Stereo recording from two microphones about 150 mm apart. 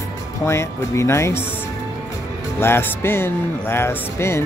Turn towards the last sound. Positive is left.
turn(degrees=15)  # may be behind; listen again after turning